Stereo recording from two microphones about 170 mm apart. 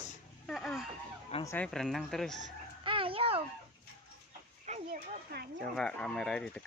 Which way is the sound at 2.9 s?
30° right (ahead or behind).